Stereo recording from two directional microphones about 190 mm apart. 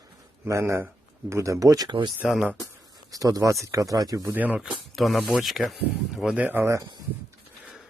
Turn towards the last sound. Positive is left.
turn(degrees=-20)  # may be behind; listen again after turning